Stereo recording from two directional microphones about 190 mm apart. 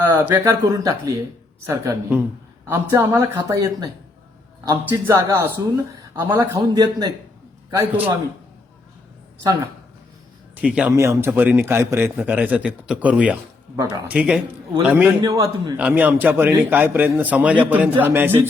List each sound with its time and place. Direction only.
0.2 s a man's voice: 10° right (ahead or behind)
7.8 s a man's voice: 10° right (ahead or behind)
10.5 s a man's voice: 5° right (ahead or behind)
15.8 s a man's voice: 10° right (ahead or behind)